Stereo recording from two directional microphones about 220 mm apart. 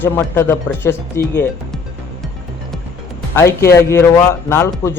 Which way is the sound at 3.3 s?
10° left (ahead or behind).